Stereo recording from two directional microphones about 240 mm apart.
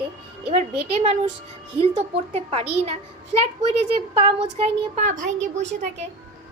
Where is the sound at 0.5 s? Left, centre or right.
Right.